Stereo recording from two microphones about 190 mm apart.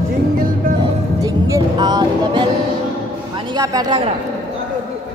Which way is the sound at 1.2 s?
15° right (ahead or behind).